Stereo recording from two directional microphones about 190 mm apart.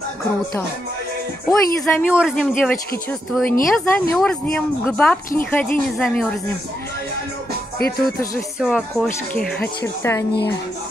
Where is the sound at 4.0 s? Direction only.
5° left (ahead or behind).